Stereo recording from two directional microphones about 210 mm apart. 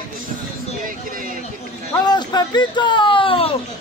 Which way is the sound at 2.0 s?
20° left (ahead or behind).